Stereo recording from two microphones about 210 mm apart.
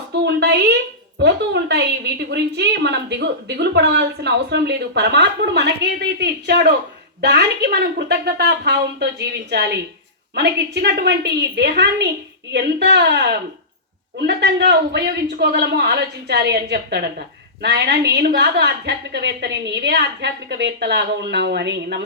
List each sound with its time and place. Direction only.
0.3 s a woman's voice: 50° right (ahead or behind)